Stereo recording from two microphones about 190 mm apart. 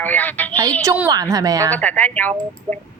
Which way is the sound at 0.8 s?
15° right (ahead or behind).